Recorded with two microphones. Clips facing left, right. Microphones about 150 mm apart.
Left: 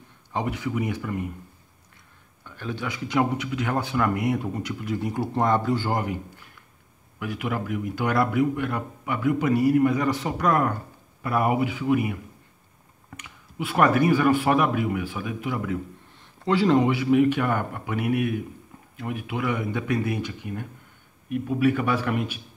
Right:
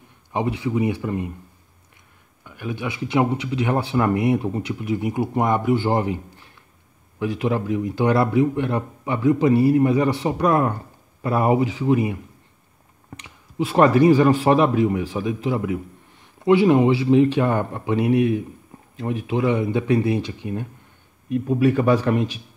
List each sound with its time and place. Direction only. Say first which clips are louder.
0.3 s speech: right 4 dB; 20° right (ahead or behind)
2.4 s speech: right 3 dB; 15° right (ahead or behind); by 22.4 s 35° right (ahead or behind)